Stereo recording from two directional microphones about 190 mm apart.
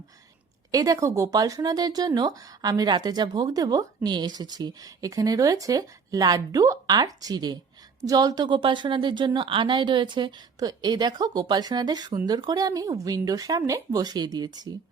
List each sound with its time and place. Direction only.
0.7 s speech: 20° right (ahead or behind)